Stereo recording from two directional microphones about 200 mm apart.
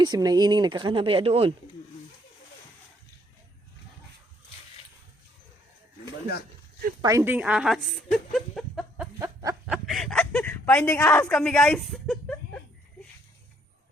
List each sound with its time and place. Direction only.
0.0 s speech: 20° right (ahead or behind)
7.0 s speech: 15° right (ahead or behind); by 9.0 s centre (ahead or behind)
9.1 s snicker: 15° right (ahead or behind)
9.7 s speech: centre (ahead or behind)